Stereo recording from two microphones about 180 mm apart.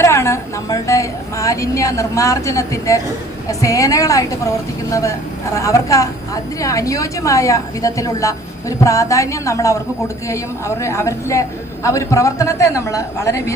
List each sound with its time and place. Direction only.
0.0 s a woman's voice: 15° left (ahead or behind)